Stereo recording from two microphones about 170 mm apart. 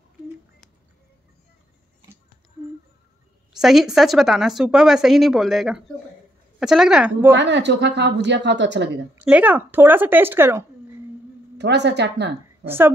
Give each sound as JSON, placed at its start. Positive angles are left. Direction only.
{"t": 3.5, "sound": "speech", "side_deg": 0}
{"t": 7.3, "sound": "a woman's voice", "side_deg": -90}
{"t": 9.1, "sound": "speech", "side_deg": -10}
{"t": 11.5, "sound": "speech", "side_deg": -85}
{"t": 12.6, "sound": "speech", "side_deg": -15}